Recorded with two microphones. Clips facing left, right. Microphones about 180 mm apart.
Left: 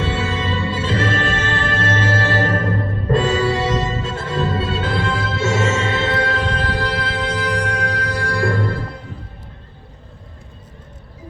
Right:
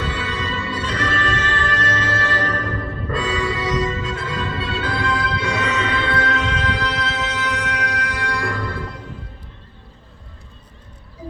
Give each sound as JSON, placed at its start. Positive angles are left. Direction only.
{"t": 0.0, "sound": "music", "side_deg": 25}